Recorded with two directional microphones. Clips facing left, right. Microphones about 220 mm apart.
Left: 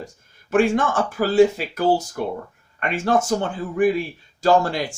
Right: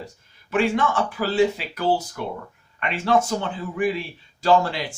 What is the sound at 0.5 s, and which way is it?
Speech, 45° left (ahead or behind).